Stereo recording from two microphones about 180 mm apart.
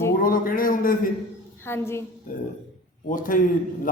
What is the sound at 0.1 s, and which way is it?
Speech, 50° left (ahead or behind).